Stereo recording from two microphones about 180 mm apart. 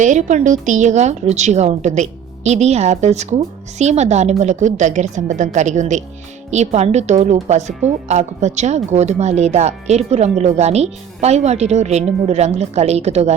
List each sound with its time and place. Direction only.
0.0 s a woman's voice: 45° right (ahead or behind)